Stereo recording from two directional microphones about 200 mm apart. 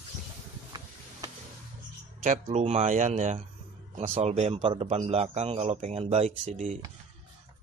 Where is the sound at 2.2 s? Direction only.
35° right (ahead or behind).